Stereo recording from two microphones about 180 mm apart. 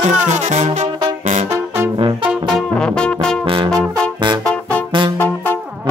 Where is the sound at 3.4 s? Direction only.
30° right (ahead or behind).